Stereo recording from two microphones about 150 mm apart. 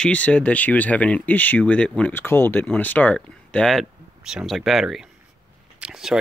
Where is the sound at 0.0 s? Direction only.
10° left (ahead or behind).